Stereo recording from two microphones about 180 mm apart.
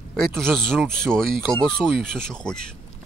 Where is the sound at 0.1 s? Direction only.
Centre (ahead or behind).